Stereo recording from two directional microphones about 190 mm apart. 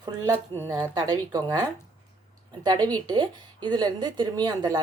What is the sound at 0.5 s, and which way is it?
Speech, 15° left (ahead or behind).